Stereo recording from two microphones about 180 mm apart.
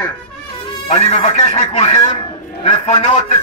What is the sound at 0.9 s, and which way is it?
Speech, 35° left (ahead or behind).